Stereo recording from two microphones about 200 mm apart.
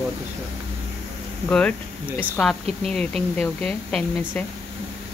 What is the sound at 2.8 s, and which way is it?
Speech, centre (ahead or behind).